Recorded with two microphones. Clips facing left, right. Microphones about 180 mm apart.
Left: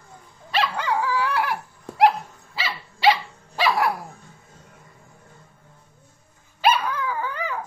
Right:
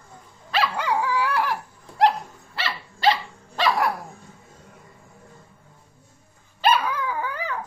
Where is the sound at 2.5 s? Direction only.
5° left (ahead or behind).